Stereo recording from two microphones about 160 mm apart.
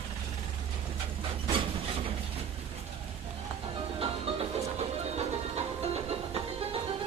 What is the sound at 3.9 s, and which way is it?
Music, 35° right (ahead or behind).